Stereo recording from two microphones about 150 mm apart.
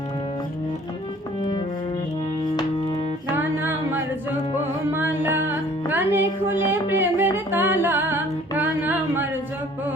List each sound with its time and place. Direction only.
2.4 s music: 30° left (ahead or behind)
3.3 s music: 15° right (ahead or behind)